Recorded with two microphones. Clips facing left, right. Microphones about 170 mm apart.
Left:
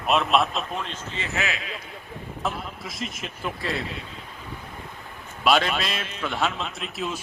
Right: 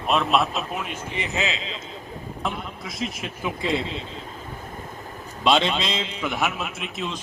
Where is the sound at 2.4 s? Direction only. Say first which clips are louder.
Even; centre (ahead or behind).